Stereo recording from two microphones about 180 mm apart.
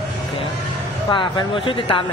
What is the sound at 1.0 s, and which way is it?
Speech, 25° left (ahead or behind).